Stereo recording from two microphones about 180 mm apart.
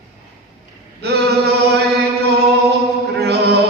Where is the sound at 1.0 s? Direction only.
65° right (ahead or behind).